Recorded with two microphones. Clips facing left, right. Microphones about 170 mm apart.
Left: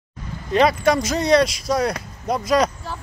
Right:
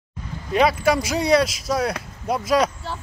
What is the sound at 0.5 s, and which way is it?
Speech, 5° right (ahead or behind).